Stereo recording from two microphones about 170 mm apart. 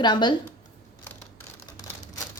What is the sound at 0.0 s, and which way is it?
Speech, 25° left (ahead or behind).